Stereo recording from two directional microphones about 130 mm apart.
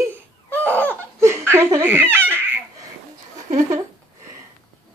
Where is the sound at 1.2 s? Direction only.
20° right (ahead or behind).